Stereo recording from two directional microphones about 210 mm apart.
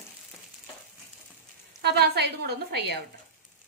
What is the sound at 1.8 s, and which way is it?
Speech, 50° right (ahead or behind).